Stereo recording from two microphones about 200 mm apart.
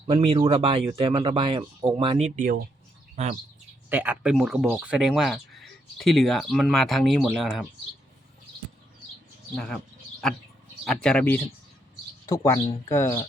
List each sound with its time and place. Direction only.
0.1 s speech: 30° right (ahead or behind)
3.2 s bird: 35° right (ahead or behind)
3.8 s speech: 10° right (ahead or behind)
9.6 s bird: 5° left (ahead or behind)
10.8 s speech: 5° left (ahead or behind)